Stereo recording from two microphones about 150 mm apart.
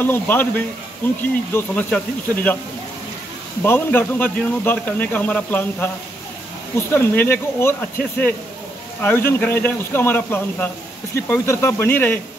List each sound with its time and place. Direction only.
0.0 s speech: 15° left (ahead or behind)
3.6 s speech: 15° left (ahead or behind)
6.9 s speech: 15° left (ahead or behind)
9.0 s speech: 15° left (ahead or behind)